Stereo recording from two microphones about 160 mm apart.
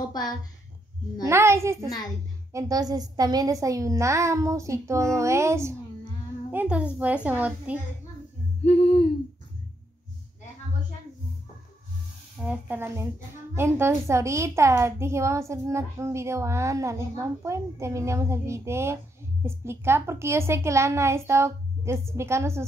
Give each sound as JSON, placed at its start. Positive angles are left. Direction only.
{"t": 0.1, "sound": "a woman's voice", "side_deg": 25}
{"t": 1.2, "sound": "a woman's voice", "side_deg": -15}
{"t": 12.4, "sound": "a woman's voice", "side_deg": -15}